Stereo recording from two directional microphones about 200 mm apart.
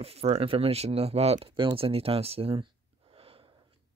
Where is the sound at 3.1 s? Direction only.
30° right (ahead or behind).